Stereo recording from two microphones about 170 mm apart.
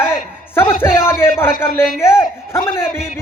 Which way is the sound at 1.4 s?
15° left (ahead or behind).